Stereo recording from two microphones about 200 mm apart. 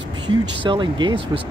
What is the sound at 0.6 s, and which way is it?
Speech, 25° right (ahead or behind).